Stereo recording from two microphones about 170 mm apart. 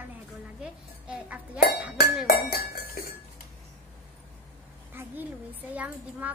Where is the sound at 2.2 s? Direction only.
65° left (ahead or behind).